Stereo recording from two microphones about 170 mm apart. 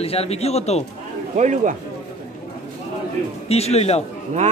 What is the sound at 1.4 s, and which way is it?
Speech, 45° right (ahead or behind).